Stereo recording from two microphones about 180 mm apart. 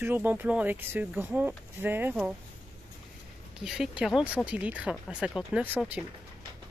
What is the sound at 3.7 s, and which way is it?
Speech, centre (ahead or behind).